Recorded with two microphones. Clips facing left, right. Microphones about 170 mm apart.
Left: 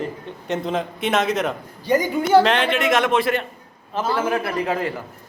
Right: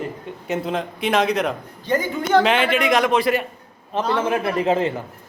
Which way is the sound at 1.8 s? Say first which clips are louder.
Left 2 dB; 10° left (ahead or behind).